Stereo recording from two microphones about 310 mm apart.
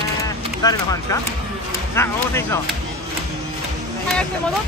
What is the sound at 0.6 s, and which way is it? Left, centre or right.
Speech, centre.